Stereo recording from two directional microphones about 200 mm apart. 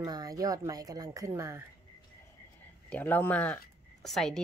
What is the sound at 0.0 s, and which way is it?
Speech, 20° right (ahead or behind).